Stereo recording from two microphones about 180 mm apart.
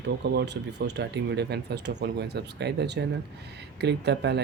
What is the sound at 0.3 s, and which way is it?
Speech, 75° right (ahead or behind).